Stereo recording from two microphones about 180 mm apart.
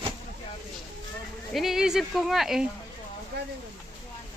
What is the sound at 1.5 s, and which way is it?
Speech, centre (ahead or behind).